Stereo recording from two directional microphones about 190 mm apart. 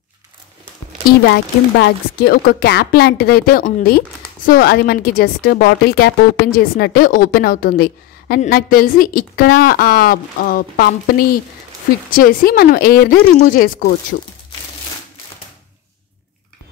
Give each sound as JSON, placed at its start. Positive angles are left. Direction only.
{"t": 1.2, "sound": "a woman's voice", "side_deg": 65}